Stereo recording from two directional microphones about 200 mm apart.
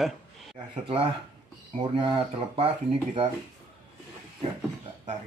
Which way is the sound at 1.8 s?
25° right (ahead or behind).